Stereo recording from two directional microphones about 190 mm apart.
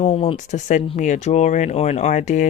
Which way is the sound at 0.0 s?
30° left (ahead or behind).